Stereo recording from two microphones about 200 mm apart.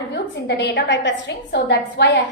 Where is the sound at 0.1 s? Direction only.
60° left (ahead or behind).